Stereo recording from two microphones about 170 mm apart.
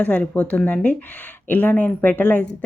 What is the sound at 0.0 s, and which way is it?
Speech, 10° left (ahead or behind).